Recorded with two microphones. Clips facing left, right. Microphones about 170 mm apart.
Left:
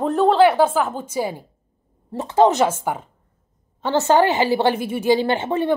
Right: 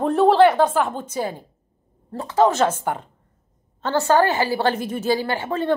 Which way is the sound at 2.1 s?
25° left (ahead or behind).